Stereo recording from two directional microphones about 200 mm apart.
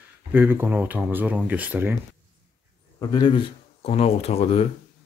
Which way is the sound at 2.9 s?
20° left (ahead or behind).